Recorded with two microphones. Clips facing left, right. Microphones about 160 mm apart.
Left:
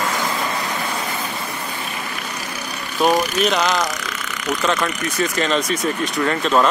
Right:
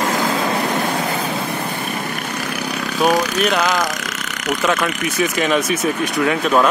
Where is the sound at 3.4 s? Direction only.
5° right (ahead or behind).